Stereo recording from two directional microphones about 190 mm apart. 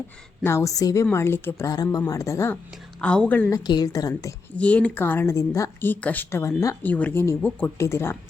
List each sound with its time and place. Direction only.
0.4 s a woman's voice: 15° left (ahead or behind)
3.6 s a woman's voice: 20° left (ahead or behind)